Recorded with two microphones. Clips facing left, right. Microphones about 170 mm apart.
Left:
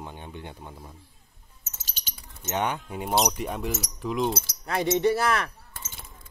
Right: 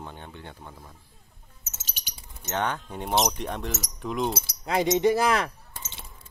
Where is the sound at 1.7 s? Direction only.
20° right (ahead or behind).